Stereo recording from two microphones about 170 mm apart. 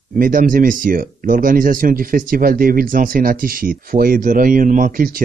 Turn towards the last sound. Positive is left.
turn(degrees=-55)  # may be behind; listen again after turning